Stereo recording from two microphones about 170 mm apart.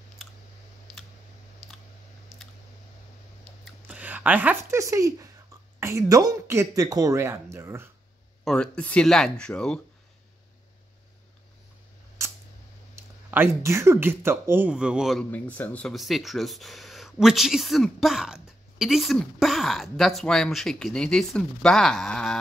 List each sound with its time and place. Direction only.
0.2 s a sound: centre (ahead or behind)
3.6 s speech: 5° right (ahead or behind)
8.5 s speech: 5° left (ahead or behind)
12.9 s speech: 15° right (ahead or behind)
15.3 s speech: 10° left (ahead or behind)